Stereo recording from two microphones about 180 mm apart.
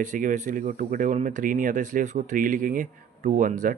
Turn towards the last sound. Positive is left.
turn(degrees=-45)  # may be behind; listen again after turning